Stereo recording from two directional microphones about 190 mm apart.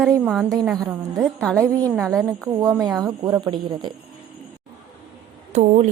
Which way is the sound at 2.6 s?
20° right (ahead or behind).